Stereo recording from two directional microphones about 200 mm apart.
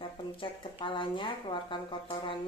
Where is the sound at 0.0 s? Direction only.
25° left (ahead or behind).